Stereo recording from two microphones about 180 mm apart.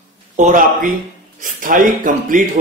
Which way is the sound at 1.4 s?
50° right (ahead or behind).